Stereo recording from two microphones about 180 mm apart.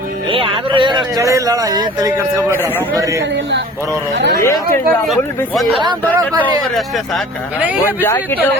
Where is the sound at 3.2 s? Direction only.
80° right.